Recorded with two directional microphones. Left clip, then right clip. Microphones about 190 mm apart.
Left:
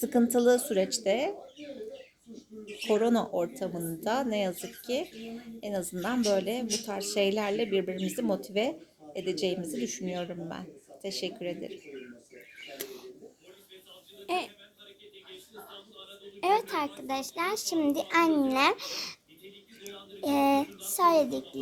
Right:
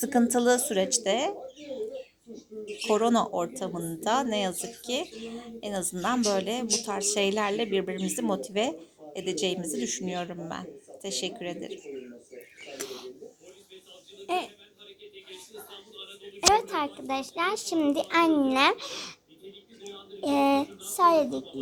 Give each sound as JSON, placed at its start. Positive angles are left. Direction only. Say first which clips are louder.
{"t": 0.0, "sound": "speech", "louder": "right 1 dB", "side_deg": 5}
{"t": 2.8, "sound": "speech", "louder": "right 2 dB", "side_deg": 10}
{"t": 12.7, "sound": "a sound", "louder": "right 5 dB", "side_deg": -10}
{"t": 14.3, "sound": "speech", "louder": "right 2 dB", "side_deg": -5}
{"t": 16.6, "sound": "a woman's voice", "louder": "right 2 dB", "side_deg": -5}
{"t": 19.8, "sound": "a sound", "louder": "right 2 dB", "side_deg": -10}
{"t": 20.9, "sound": "speech", "louder": "right 2 dB", "side_deg": 0}